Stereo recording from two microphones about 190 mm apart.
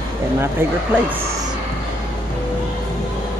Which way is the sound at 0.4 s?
10° right (ahead or behind).